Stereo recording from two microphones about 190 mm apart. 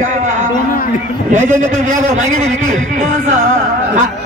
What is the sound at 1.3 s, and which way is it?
Speech, 40° right (ahead or behind).